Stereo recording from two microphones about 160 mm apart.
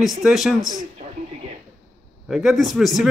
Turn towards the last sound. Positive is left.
turn(degrees=0)  # may be behind; listen again after turning